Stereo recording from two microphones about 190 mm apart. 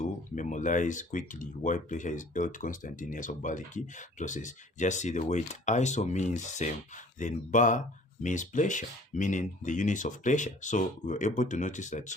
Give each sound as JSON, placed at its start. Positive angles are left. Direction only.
{"t": 0.0, "sound": "speech", "side_deg": 40}